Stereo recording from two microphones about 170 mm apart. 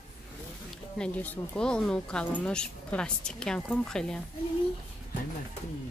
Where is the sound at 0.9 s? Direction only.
10° left (ahead or behind).